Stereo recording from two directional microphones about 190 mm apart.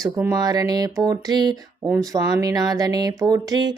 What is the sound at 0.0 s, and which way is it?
Speech, 15° right (ahead or behind).